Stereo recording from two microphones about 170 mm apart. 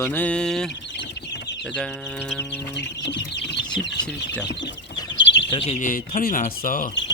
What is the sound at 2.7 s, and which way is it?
Chicken, 90° left.